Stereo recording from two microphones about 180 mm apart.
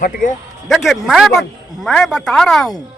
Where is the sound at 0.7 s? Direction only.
Centre (ahead or behind).